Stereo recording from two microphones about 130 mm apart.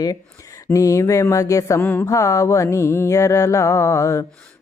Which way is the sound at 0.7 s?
25° left (ahead or behind).